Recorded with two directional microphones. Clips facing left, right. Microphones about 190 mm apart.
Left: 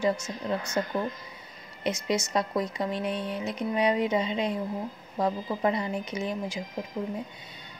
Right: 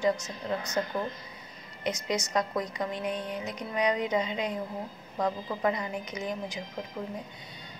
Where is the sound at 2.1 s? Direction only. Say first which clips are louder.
Left 2 dB; 30° left (ahead or behind).